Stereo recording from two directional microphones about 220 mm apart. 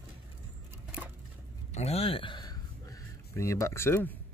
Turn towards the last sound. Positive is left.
turn(degrees=10)  # may be behind; listen again after turning